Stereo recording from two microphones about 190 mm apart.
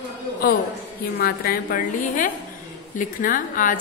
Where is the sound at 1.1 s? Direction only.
55° left (ahead or behind).